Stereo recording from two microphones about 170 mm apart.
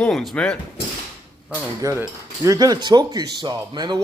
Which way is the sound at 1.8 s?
20° right (ahead or behind).